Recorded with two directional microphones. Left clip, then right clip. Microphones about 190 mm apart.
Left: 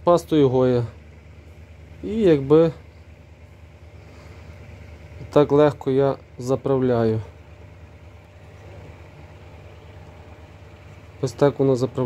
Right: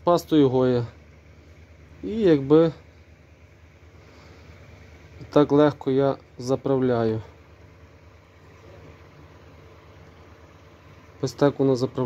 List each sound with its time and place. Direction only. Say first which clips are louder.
0.0 s speech: left 2 dB; centre (ahead or behind)
2.0 s speech: left 2 dB; centre (ahead or behind)
5.3 s speech: left 2 dB; centre (ahead or behind)
11.1 s speech: left 2 dB; centre (ahead or behind)